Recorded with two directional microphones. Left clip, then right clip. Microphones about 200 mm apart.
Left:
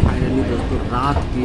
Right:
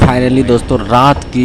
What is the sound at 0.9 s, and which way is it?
Speech, 40° right (ahead or behind).